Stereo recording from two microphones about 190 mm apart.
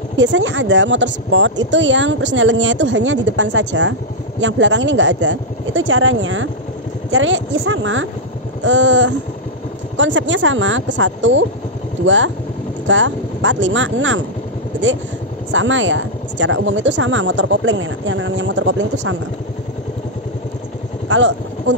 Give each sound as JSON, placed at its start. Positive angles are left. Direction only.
{"t": 0.2, "sound": "a woman's voice", "side_deg": -75}
{"t": 8.6, "sound": "speech", "side_deg": -75}
{"t": 15.5, "sound": "speech", "side_deg": -80}
{"t": 21.1, "sound": "vehicle", "side_deg": -75}